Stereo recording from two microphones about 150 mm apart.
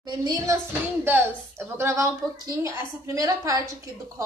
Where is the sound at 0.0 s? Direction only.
25° right (ahead or behind).